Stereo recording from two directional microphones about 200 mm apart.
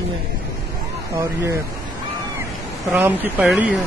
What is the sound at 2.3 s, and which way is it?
Speech, 10° right (ahead or behind).